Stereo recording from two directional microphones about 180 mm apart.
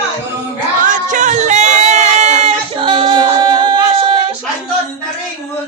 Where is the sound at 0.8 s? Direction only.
45° right (ahead or behind); by 4.3 s 25° right (ahead or behind).